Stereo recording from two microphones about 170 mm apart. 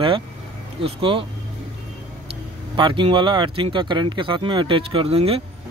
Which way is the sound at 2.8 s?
30° right (ahead or behind).